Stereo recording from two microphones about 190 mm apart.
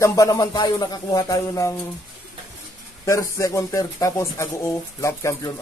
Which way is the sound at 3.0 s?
15° left (ahead or behind).